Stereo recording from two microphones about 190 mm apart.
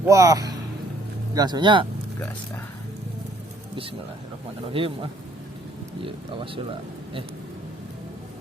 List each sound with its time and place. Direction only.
0.0 s speech: 15° right (ahead or behind)
4.6 s speech: 30° right (ahead or behind)